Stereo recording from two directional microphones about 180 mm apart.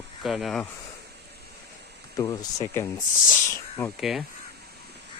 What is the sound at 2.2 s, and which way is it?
Speech, 20° left (ahead or behind).